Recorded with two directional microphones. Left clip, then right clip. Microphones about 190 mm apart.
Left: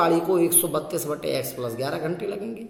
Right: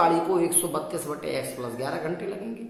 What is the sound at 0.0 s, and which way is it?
A man's voice, 35° left (ahead or behind).